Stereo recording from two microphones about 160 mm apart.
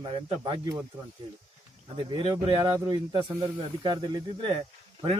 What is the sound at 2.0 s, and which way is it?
A man's voice, 35° right (ahead or behind).